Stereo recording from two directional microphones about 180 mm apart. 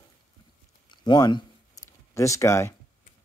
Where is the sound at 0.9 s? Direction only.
25° left (ahead or behind).